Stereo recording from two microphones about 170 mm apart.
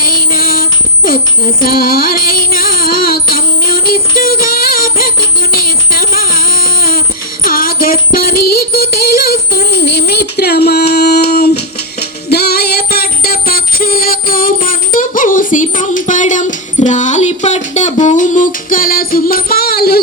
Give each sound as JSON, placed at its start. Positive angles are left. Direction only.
{"t": 0.0, "sound": "music", "side_deg": 60}
{"t": 5.9, "sound": "a sound", "side_deg": 55}
{"t": 7.4, "sound": "music", "side_deg": 60}
{"t": 8.8, "sound": "child singing", "side_deg": 60}